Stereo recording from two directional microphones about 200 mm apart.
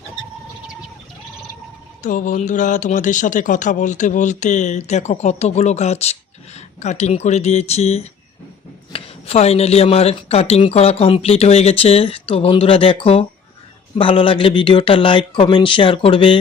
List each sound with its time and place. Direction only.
2.0 s speech: 40° left (ahead or behind); by 16.4 s 25° left (ahead or behind)